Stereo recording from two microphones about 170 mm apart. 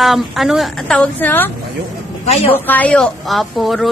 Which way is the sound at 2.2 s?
35° left (ahead or behind).